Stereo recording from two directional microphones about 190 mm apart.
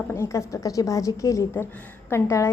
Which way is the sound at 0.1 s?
15° left (ahead or behind).